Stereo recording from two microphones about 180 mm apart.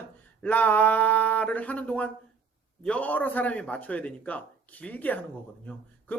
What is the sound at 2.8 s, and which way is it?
A man's voice, 5° left (ahead or behind).